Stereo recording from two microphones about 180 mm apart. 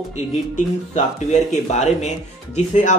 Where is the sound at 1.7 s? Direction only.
40° left (ahead or behind).